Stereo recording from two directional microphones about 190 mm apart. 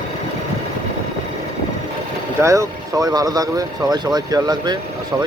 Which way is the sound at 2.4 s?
15° right (ahead or behind).